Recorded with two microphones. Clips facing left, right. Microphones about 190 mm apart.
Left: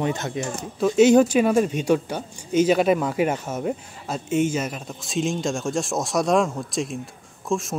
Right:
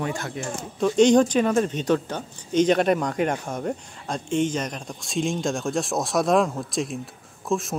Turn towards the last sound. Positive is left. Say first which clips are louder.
# even
turn(degrees=0)  # may be behind; listen again after turning